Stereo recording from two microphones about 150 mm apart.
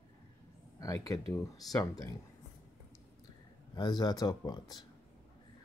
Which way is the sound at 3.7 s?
30° left (ahead or behind).